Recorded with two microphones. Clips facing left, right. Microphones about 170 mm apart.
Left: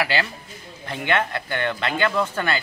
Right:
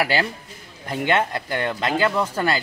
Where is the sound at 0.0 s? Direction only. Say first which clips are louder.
Right 2 dB; 40° right (ahead or behind).